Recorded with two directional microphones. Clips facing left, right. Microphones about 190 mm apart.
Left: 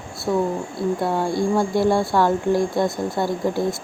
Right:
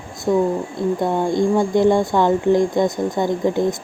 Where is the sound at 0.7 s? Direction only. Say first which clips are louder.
Right 1 dB; 20° right (ahead or behind).